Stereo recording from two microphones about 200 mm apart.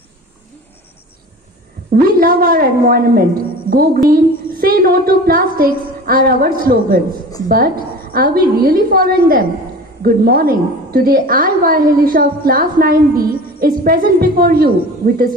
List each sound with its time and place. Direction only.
1.9 s a woman's voice: 45° right (ahead or behind)